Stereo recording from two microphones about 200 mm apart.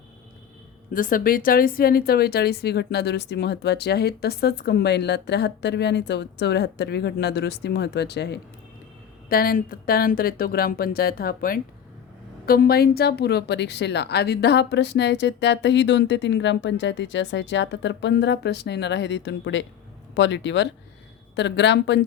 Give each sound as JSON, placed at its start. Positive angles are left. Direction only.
{"t": 0.9, "sound": "a woman's voice", "side_deg": 45}